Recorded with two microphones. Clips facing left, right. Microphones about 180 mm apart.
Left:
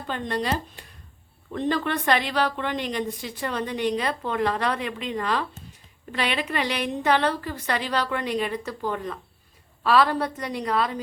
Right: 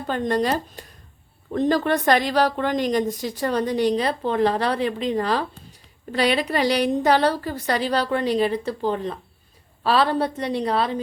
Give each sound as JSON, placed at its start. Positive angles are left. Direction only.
{"t": 0.1, "sound": "a woman's voice", "side_deg": -45}